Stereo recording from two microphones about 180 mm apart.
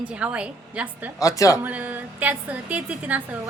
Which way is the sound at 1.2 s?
20° left (ahead or behind).